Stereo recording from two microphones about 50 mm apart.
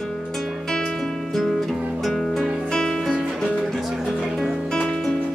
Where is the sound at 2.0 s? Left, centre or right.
Centre.